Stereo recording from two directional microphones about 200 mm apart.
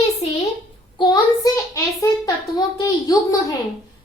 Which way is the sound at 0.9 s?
20° left (ahead or behind).